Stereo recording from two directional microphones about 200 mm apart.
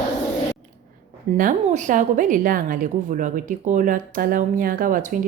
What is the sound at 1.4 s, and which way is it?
A woman's voice, 40° right (ahead or behind).